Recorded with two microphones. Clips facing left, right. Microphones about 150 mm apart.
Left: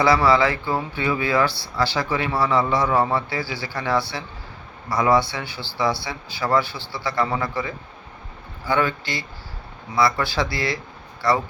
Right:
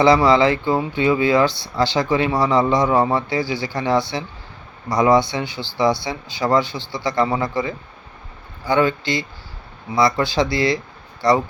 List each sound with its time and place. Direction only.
0.0 s speech: 20° right (ahead or behind)